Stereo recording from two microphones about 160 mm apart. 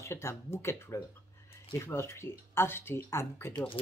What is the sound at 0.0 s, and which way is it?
Speech, 15° left (ahead or behind).